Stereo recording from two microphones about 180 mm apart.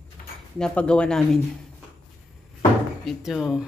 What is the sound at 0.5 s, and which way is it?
Speech, 5° left (ahead or behind).